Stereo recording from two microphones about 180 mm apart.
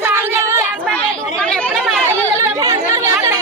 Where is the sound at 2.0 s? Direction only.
20° right (ahead or behind).